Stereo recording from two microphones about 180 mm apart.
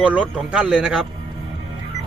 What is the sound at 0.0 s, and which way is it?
A man's voice, 10° right (ahead or behind).